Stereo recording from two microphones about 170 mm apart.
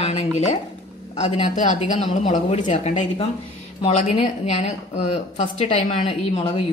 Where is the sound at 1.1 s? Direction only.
40° left (ahead or behind).